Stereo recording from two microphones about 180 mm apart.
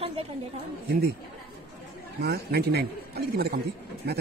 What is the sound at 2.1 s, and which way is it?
Speech, 60° right (ahead or behind).